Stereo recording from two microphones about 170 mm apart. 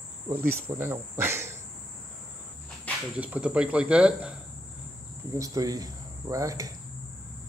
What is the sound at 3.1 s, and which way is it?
Speech, 10° right (ahead or behind).